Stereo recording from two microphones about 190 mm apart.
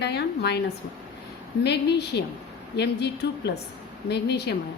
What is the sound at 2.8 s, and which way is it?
A woman's voice, 60° left (ahead or behind).